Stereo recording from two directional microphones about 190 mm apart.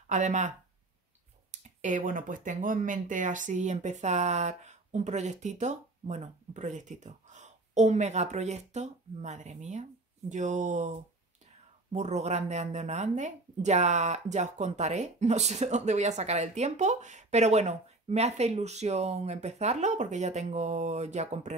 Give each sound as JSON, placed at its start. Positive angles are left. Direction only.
{"t": 0.1, "sound": "speech", "side_deg": -40}